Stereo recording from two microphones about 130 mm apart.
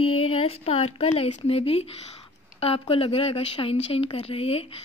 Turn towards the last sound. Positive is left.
turn(degrees=50)  # may be behind; listen again after turning